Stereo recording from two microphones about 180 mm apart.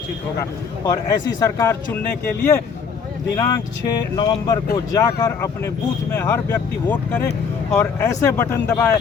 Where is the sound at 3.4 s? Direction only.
20° left (ahead or behind).